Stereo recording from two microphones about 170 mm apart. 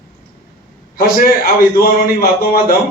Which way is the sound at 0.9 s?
60° left (ahead or behind).